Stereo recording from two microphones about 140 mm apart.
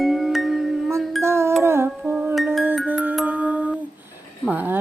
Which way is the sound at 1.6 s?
15° right (ahead or behind).